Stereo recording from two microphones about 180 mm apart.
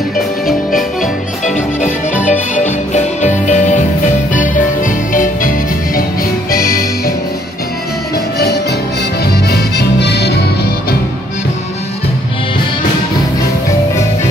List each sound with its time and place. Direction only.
1.4 s music: 40° left (ahead or behind)
8.4 s music: 65° left (ahead or behind)